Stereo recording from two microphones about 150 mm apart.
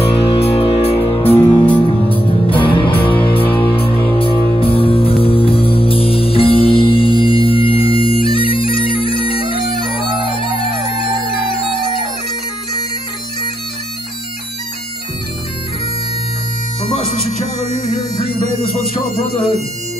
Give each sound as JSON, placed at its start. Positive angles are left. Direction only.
{"t": 0.0, "sound": "music", "side_deg": 40}
{"t": 9.9, "sound": "bagpipes", "side_deg": 35}
{"t": 16.9, "sound": "music", "side_deg": 45}